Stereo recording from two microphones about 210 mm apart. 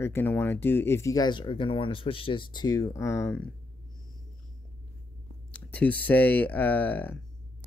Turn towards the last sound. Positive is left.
turn(degrees=5)  # may be behind; listen again after turning